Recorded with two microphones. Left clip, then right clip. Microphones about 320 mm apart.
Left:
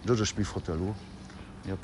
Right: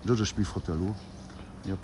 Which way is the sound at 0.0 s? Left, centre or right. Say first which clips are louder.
Left 1 dB; centre.